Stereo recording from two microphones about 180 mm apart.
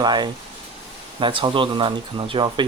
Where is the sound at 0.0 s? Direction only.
25° right (ahead or behind).